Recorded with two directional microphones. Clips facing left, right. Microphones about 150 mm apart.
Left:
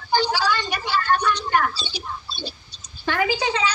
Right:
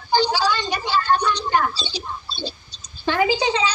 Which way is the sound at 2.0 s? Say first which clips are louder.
Right 2 dB; 30° right (ahead or behind).